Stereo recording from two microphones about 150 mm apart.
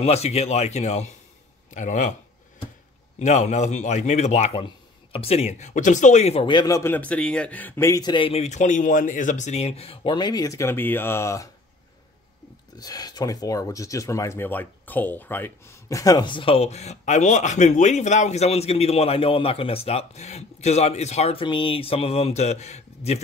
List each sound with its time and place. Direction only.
0.0 s a man's voice: 45° left (ahead or behind)
3.2 s a man's voice: 50° left (ahead or behind); by 11.4 s 20° left (ahead or behind)
12.7 s speech: 25° left (ahead or behind); by 23.2 s 50° left (ahead or behind)